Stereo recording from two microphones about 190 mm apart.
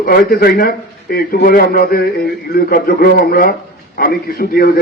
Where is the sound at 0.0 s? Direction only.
55° left (ahead or behind).